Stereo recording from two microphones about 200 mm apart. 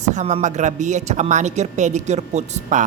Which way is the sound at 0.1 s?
35° right (ahead or behind).